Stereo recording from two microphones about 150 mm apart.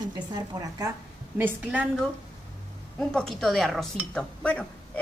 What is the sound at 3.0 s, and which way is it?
Speech, 5° left (ahead or behind).